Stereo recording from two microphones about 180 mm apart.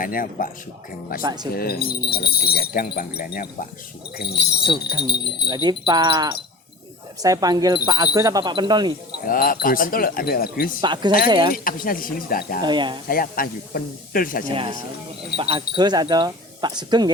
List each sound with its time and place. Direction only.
0.0 s speech: 50° left (ahead or behind)
1.2 s speech: 20° right (ahead or behind)
1.5 s speech: 60° left (ahead or behind)
5.6 s speech: 25° right (ahead or behind)
9.2 s speech: 50° left (ahead or behind)
10.8 s speech: 25° right (ahead or behind)
11.5 s speech: 50° left (ahead or behind)
12.6 s speech: 25° right (ahead or behind)
13.1 s speech: 50° left (ahead or behind)
14.5 s speech: 30° right (ahead or behind)